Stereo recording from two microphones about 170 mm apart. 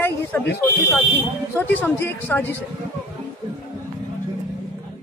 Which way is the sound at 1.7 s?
10° left (ahead or behind).